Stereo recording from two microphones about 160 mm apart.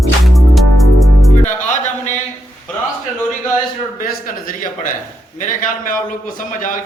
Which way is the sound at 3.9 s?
60° left (ahead or behind).